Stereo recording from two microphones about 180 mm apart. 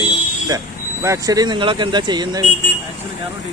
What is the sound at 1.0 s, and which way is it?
Speech, 20° right (ahead or behind).